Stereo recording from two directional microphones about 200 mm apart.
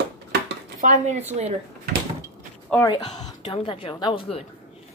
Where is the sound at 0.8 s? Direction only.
40° right (ahead or behind).